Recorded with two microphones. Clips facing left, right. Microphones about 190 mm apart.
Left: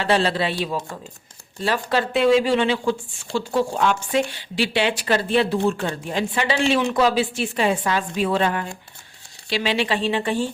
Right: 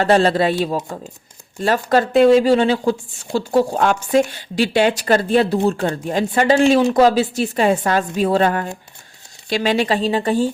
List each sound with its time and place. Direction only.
0.0 s speech: 45° right (ahead or behind)